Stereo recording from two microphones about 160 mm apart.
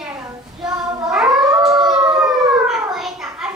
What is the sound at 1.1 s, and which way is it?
Howl, 5° right (ahead or behind).